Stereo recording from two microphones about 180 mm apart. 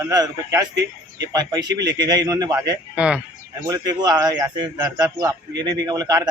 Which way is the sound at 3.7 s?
20° right (ahead or behind).